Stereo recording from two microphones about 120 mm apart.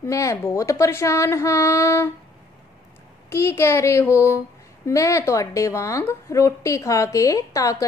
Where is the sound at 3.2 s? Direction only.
20° left (ahead or behind).